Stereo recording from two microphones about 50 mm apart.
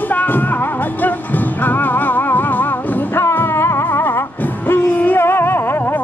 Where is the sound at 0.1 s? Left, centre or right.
Left.